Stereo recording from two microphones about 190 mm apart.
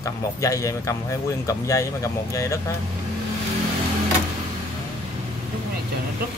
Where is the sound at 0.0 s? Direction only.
15° left (ahead or behind).